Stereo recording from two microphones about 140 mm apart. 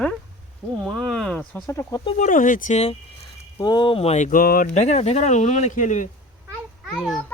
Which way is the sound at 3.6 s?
30° left (ahead or behind).